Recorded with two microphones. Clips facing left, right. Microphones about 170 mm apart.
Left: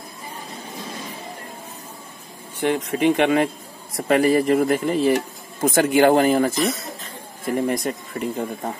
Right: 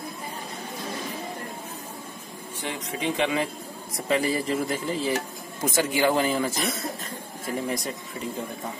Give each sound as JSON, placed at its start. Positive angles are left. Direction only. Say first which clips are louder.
{"t": 2.6, "sound": "speech", "louder": "left 11 dB", "side_deg": 60}